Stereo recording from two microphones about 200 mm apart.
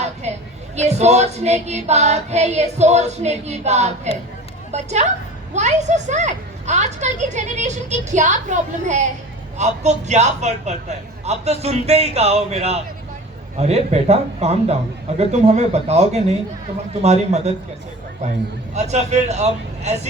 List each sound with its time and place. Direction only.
0.0 s a sound: 35° right (ahead or behind)
0.8 s speech: 35° right (ahead or behind)
18.7 s speech: 35° right (ahead or behind)